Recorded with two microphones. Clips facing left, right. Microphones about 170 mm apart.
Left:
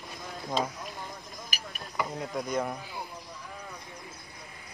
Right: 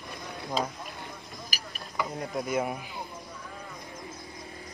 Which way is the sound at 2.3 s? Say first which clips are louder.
Right 3 dB; 5° right (ahead or behind).